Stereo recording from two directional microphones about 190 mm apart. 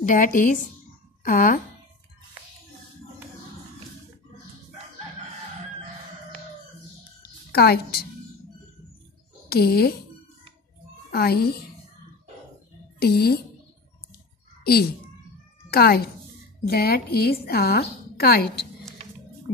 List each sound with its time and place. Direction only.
0.0 s a woman's voice: 45° left (ahead or behind)
7.5 s a woman's voice: 55° left (ahead or behind)
9.5 s a woman's voice: 55° left (ahead or behind)
11.1 s a child's voice: 55° left (ahead or behind)
13.0 s a woman's voice: 55° left (ahead or behind)
14.6 s a sound: 55° left (ahead or behind)
15.7 s a woman's voice: 55° left (ahead or behind)